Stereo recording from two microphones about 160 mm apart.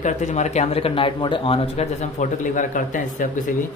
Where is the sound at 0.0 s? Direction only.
45° left (ahead or behind).